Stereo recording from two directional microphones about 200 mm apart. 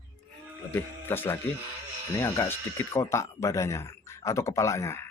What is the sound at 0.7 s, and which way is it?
Speech, 10° left (ahead or behind).